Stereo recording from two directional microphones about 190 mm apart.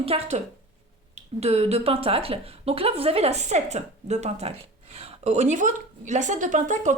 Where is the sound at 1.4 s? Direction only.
35° right (ahead or behind).